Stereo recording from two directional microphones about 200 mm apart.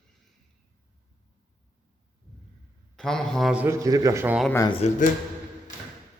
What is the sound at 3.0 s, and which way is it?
Speech, centre (ahead or behind).